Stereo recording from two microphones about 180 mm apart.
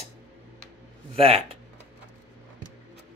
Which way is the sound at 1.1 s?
30° right (ahead or behind).